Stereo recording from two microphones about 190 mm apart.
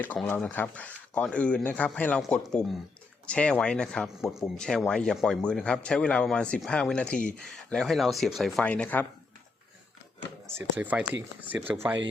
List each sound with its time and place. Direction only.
0.0 s a man's voice: 10° left (ahead or behind)
10.5 s speech: 10° right (ahead or behind)